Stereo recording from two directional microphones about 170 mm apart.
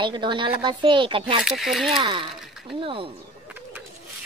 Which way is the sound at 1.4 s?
Centre (ahead or behind).